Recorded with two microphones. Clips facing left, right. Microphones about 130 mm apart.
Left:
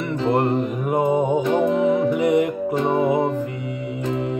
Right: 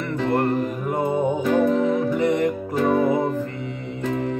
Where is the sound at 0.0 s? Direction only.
20° left (ahead or behind).